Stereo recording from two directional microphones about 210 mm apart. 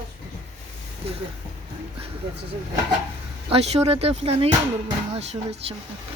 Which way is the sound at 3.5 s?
30° right (ahead or behind).